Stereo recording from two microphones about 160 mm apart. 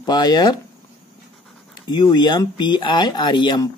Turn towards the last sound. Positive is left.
turn(degrees=25)  # may be behind; listen again after turning